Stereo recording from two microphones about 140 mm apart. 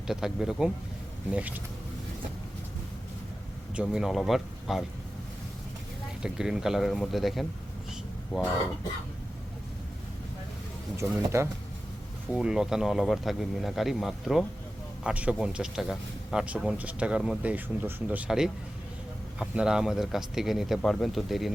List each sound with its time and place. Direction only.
0.1 s speech: 5° right (ahead or behind)
3.8 s speech: 5° right (ahead or behind)
6.2 s speech: 5° right (ahead or behind)
10.9 s speech: 20° right (ahead or behind)
12.3 s speech: 5° right (ahead or behind)